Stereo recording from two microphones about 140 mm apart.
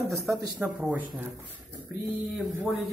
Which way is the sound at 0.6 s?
10° right (ahead or behind).